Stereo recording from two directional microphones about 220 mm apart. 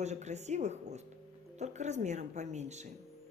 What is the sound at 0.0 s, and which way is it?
Speech, 30° right (ahead or behind).